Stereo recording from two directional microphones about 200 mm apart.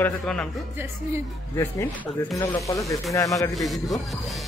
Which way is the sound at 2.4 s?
15° left (ahead or behind).